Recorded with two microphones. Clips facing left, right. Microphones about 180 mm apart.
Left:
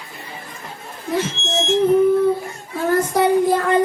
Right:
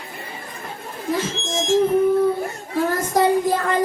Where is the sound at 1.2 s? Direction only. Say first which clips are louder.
Left 2 dB; 65° left (ahead or behind).